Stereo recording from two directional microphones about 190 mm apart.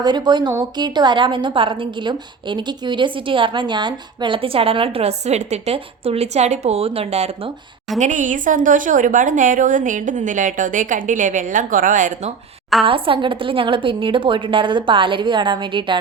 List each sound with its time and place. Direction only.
0.0 s a woman's voice: 20° right (ahead or behind); by 12.3 s 45° right (ahead or behind)
12.8 s a woman's voice: 30° right (ahead or behind)